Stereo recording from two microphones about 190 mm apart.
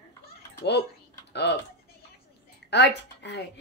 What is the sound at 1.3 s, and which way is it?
Typing, 60° left (ahead or behind).